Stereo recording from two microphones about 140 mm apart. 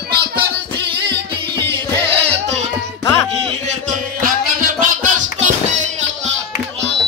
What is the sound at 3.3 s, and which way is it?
Music, 50° right (ahead or behind).